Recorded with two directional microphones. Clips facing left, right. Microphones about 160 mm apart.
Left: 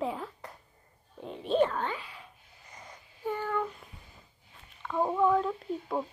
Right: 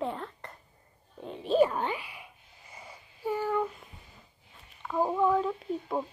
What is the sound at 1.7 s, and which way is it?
Speech, 15° right (ahead or behind).